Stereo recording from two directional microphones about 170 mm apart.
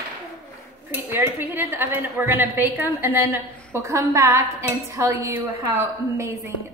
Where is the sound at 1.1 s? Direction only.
10° right (ahead or behind).